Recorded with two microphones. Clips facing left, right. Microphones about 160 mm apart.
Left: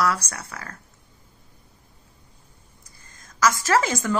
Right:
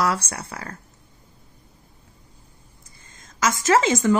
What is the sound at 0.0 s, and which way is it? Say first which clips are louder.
Speech: right 1 dB; 25° right (ahead or behind).